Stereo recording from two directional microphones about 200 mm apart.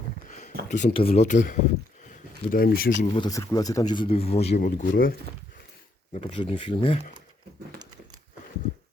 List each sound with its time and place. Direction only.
0.3 s a sound: 35° left (ahead or behind)
0.7 s speech: 35° left (ahead or behind)
3.2 s speech: 15° left (ahead or behind); by 5.1 s 45° left (ahead or behind)
6.1 s speech: 30° left (ahead or behind)